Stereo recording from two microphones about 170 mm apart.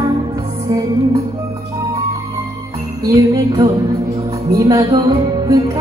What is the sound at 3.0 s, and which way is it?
Music, 20° right (ahead or behind).